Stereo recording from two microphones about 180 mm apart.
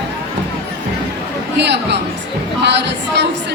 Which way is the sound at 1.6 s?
70° right (ahead or behind).